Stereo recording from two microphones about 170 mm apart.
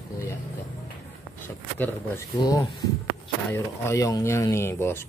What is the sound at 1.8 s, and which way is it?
Speech, 15° left (ahead or behind).